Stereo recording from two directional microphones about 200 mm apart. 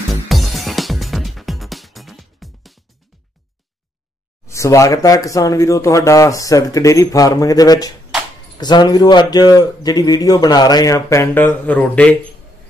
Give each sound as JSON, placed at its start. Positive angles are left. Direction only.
{"t": 0.3, "sound": "music", "side_deg": 0}
{"t": 4.5, "sound": "a man's voice", "side_deg": 15}